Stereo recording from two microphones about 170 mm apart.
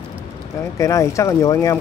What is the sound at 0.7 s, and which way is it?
Speech, 20° left (ahead or behind).